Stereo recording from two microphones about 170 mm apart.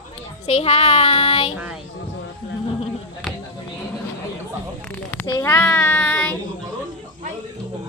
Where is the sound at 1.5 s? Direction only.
5° right (ahead or behind).